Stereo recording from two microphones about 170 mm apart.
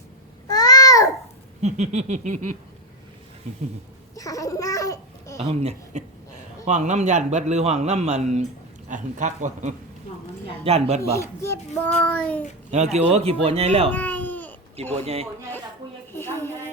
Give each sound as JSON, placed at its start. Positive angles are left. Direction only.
{"t": 0.4, "sound": "babbling", "side_deg": 20}
{"t": 1.6, "sound": "a sound", "side_deg": -45}
{"t": 4.1, "sound": "babbling", "side_deg": 20}
{"t": 5.4, "sound": "a man's voice", "side_deg": -40}
{"t": 8.9, "sound": "a sound", "side_deg": -50}
{"t": 10.6, "sound": "a man's voice", "side_deg": -35}
{"t": 11.2, "sound": "speech", "side_deg": 15}
{"t": 12.7, "sound": "a man's voice", "side_deg": -40}
{"t": 13.9, "sound": "baby cry", "side_deg": 10}
{"t": 14.9, "sound": "a man's voice", "side_deg": -35}
{"t": 16.1, "sound": "a sound", "side_deg": 15}